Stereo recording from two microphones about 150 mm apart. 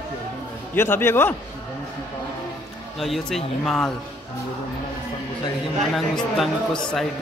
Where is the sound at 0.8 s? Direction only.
15° left (ahead or behind).